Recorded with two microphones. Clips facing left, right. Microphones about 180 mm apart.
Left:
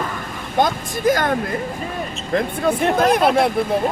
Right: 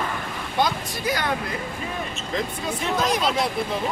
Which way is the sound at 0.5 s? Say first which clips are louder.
Left 5 dB; 50° left (ahead or behind).